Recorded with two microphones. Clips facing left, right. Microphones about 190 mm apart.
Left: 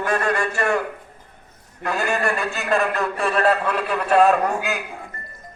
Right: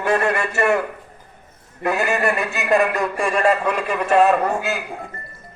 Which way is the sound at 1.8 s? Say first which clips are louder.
Right 3 dB; 20° right (ahead or behind).